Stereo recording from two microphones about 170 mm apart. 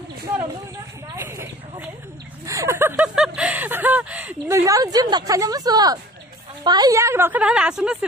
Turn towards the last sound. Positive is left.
turn(degrees=-5)  # may be behind; listen again after turning